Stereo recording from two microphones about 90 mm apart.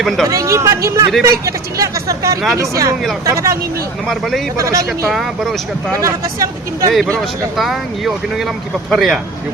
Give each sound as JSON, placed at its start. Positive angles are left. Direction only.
{"t": 0.3, "sound": "speech", "side_deg": -35}
{"t": 4.0, "sound": "speech", "side_deg": 0}
{"t": 4.5, "sound": "speech", "side_deg": -35}
{"t": 5.1, "sound": "speech", "side_deg": 0}
{"t": 6.0, "sound": "speech", "side_deg": -40}
{"t": 6.9, "sound": "speech", "side_deg": 5}